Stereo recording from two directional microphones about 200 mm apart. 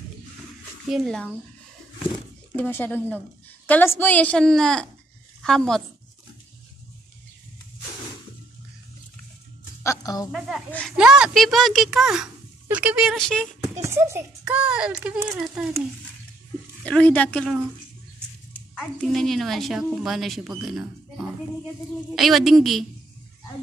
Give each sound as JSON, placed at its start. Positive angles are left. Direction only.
{"t": 0.8, "sound": "speech", "side_deg": 0}
{"t": 2.5, "sound": "a woman's voice", "side_deg": 10}
{"t": 9.8, "sound": "music", "side_deg": 15}
{"t": 10.3, "sound": "speech", "side_deg": -5}
{"t": 13.7, "sound": "a child's voice", "side_deg": -15}
{"t": 16.8, "sound": "speech", "side_deg": 5}
{"t": 18.8, "sound": "speech", "side_deg": 0}
{"t": 22.1, "sound": "speech", "side_deg": 0}